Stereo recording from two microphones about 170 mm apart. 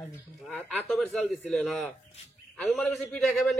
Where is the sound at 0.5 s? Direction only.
5° left (ahead or behind).